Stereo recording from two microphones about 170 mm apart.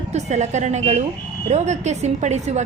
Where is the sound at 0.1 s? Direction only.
45° right (ahead or behind).